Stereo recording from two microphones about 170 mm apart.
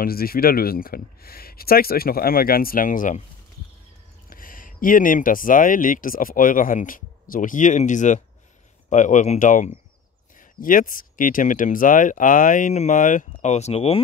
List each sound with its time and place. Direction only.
0.0 s speech: 60° left (ahead or behind)
4.3 s speech: 55° left (ahead or behind); by 13.9 s 40° left (ahead or behind)